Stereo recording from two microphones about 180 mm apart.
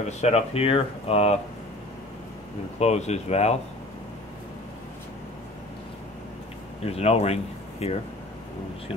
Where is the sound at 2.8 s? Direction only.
40° left (ahead or behind).